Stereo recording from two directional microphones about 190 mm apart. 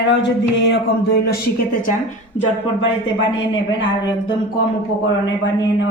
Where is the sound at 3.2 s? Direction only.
25° left (ahead or behind).